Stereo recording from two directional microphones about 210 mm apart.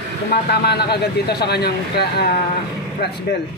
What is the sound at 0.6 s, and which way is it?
Speech, 50° left (ahead or behind).